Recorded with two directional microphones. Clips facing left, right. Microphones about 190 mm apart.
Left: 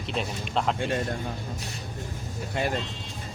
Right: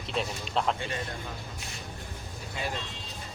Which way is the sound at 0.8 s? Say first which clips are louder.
Left 7 dB; 50° left (ahead or behind).